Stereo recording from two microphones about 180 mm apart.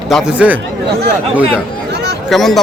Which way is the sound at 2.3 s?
Centre (ahead or behind).